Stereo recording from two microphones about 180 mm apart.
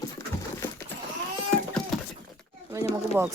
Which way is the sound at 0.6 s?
10° left (ahead or behind).